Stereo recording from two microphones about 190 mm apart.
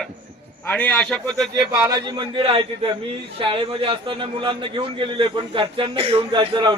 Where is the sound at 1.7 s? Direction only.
15° right (ahead or behind).